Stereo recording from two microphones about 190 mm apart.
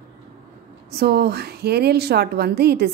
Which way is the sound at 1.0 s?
60° right (ahead or behind).